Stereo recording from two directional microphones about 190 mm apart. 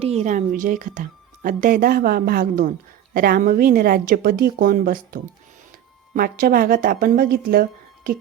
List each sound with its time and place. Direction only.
0.0 s a woman's voice: 35° right (ahead or behind); by 8.1 s 50° right (ahead or behind)